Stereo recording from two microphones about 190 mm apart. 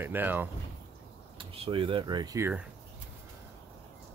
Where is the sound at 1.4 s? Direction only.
30° right (ahead or behind).